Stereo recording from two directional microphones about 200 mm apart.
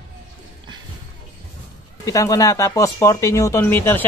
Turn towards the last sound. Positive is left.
turn(degrees=10)  # may be behind; listen again after turning